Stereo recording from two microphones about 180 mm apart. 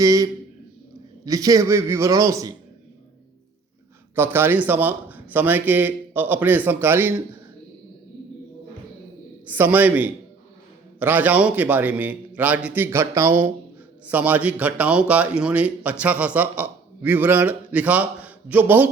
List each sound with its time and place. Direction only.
0.0 s a man's voice: 20° right (ahead or behind)
4.1 s a man's voice: 15° right (ahead or behind)
9.5 s a man's voice: 10° right (ahead or behind)